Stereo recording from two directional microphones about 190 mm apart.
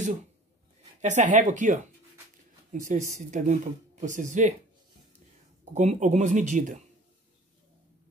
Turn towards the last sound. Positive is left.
turn(degrees=-40)  # may be behind; listen again after turning